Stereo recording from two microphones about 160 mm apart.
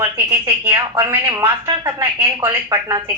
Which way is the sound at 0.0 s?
15° right (ahead or behind).